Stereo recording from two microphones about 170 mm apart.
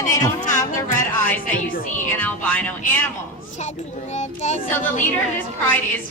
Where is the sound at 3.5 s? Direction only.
45° left (ahead or behind).